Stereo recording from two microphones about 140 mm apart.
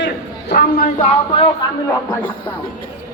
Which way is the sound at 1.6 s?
30° left (ahead or behind).